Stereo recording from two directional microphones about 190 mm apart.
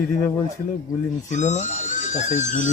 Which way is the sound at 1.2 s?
40° left (ahead or behind).